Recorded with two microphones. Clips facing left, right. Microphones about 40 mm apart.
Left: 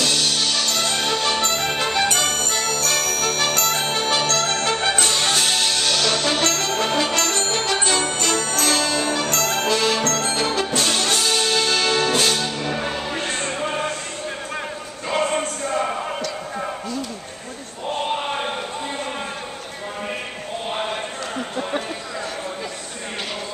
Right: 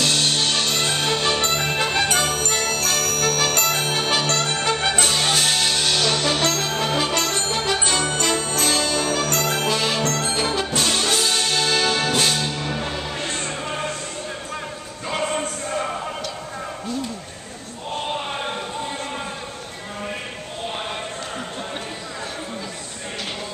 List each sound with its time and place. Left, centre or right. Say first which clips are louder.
0.1 s music: right 1 dB; right; by 3.3 s centre
3.3 s music: right 1 dB; centre
6.2 s brass instrument: even; centre
8.2 s music: even; centre
10.8 s brass instrument: right 2 dB; centre
12.2 s music: left 1 dB; centre
15.0 s music: left 3 dB; centre
15.8 s a sound: left 3 dB; centre